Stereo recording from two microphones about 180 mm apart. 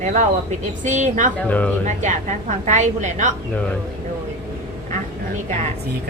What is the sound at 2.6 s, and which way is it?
Speech, 40° right (ahead or behind).